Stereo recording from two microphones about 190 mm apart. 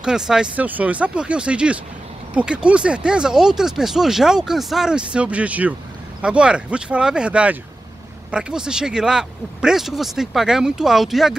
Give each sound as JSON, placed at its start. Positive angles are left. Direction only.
{"t": 0.0, "sound": "speech", "side_deg": -5}